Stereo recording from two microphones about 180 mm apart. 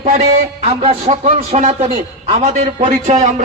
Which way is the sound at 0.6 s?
35° right (ahead or behind).